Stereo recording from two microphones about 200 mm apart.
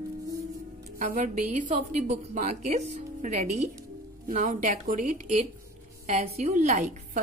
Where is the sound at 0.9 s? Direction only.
40° right (ahead or behind).